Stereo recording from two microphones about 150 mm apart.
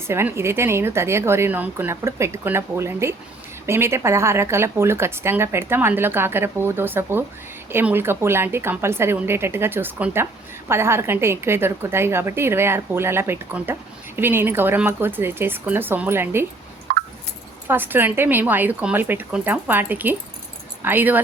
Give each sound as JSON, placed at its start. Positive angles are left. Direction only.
{"t": 0.1, "sound": "speech", "side_deg": -15}
{"t": 16.9, "sound": "a sound", "side_deg": -75}
{"t": 17.7, "sound": "speech", "side_deg": -15}